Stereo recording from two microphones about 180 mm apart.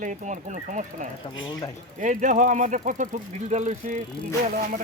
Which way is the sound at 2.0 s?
45° right (ahead or behind).